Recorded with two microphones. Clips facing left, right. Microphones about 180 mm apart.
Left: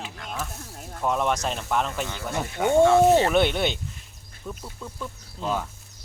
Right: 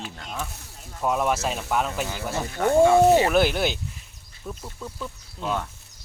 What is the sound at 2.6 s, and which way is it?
Speech, 10° left (ahead or behind).